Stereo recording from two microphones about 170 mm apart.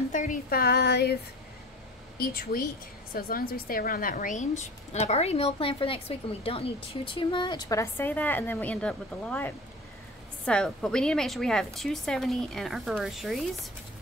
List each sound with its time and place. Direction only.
0.1 s speech: 50° left (ahead or behind); by 1.1 s 70° left (ahead or behind)
2.1 s a woman's voice: 60° left (ahead or behind); by 13.5 s centre (ahead or behind)